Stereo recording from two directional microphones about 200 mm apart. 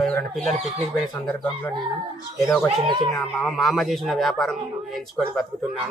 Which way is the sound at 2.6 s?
25° right (ahead or behind).